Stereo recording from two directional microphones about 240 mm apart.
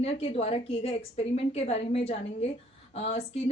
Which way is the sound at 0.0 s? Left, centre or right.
Left.